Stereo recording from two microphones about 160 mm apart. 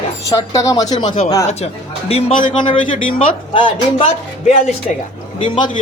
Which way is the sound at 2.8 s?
55° left (ahead or behind).